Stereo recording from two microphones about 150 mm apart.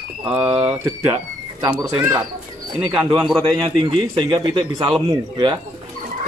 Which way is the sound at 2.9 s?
5° right (ahead or behind).